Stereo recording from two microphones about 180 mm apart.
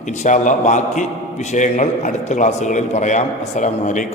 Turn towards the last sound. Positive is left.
turn(degrees=45)  # may be behind; listen again after turning